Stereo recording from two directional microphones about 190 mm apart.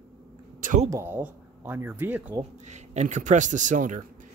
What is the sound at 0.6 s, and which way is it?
Speech, 45° right (ahead or behind).